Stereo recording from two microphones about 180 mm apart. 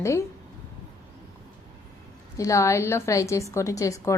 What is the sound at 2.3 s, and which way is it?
A woman's voice, 15° left (ahead or behind).